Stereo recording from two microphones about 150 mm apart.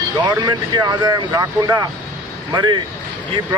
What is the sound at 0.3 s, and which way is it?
Speech, 25° right (ahead or behind).